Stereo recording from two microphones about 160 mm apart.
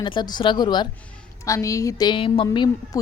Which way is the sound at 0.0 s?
30° left (ahead or behind).